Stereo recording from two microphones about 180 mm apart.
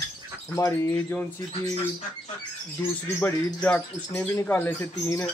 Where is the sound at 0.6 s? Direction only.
15° left (ahead or behind).